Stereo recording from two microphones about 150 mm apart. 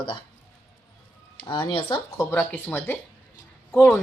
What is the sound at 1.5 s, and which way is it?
Speech, 35° left (ahead or behind).